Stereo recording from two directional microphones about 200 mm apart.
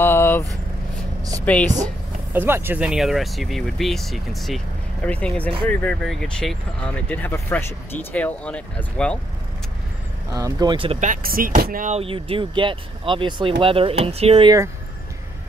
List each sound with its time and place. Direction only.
0.0 s vehicle: 10° left (ahead or behind)
1.4 s speech: 5° left (ahead or behind)
2.3 s speech: 10° right (ahead or behind); by 9.2 s 5° left (ahead or behind)
10.3 s speech: 20° right (ahead or behind)